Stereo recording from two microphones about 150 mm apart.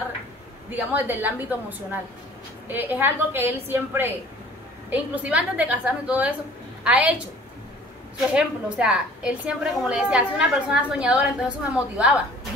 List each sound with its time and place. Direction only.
0.7 s a woman's voice: 10° right (ahead or behind)
8.4 s a woman's voice: 5° right (ahead or behind)